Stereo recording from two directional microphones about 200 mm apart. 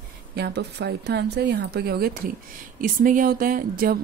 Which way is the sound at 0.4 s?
55° right (ahead or behind).